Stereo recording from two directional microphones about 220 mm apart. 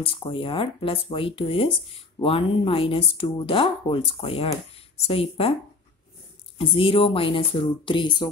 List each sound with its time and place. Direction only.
0.0 s speech: 25° left (ahead or behind)
6.6 s speech: 25° left (ahead or behind)